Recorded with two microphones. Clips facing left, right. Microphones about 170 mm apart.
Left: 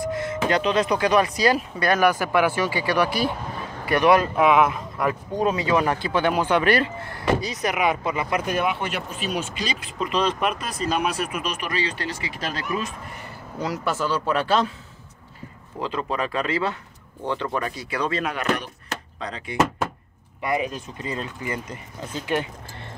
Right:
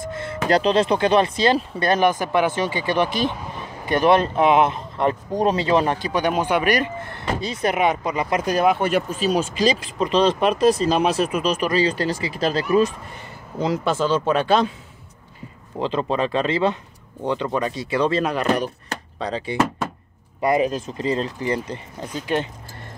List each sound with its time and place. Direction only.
0.0 s speech: 25° right (ahead or behind)
5.9 s speech: 15° right (ahead or behind)
8.5 s speech: 35° right (ahead or behind)
13.6 s speech: 20° right (ahead or behind)
15.8 s speech: 25° right (ahead or behind)